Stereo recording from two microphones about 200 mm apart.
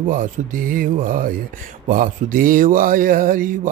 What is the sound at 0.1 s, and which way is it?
Speech, 45° right (ahead or behind).